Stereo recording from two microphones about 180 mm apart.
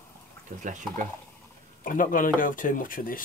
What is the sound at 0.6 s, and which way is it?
Speech, 45° right (ahead or behind).